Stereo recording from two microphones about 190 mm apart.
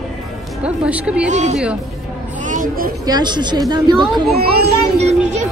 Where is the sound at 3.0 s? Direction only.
20° right (ahead or behind).